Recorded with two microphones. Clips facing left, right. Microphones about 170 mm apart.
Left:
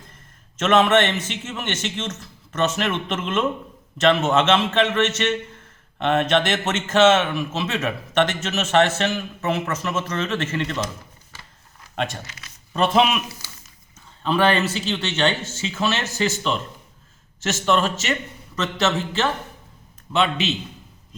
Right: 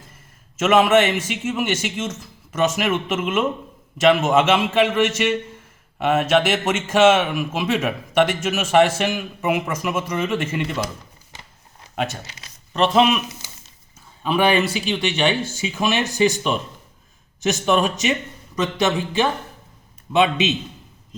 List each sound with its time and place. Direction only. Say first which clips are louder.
0.5 s speech: right 2 dB; 10° right (ahead or behind)
11.9 s speech: right 1 dB; 5° right (ahead or behind)
14.3 s speech: right 1 dB; 10° right (ahead or behind)